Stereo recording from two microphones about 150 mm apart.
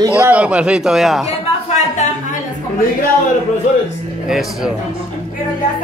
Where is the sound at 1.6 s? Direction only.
50° left (ahead or behind).